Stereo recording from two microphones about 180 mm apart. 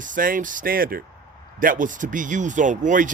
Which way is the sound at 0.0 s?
50° right (ahead or behind).